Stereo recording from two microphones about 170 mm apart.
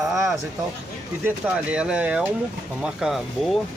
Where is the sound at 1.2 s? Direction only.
5° right (ahead or behind).